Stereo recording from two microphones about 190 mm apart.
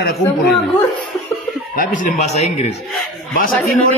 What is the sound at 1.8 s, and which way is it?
Speech, 45° left (ahead or behind).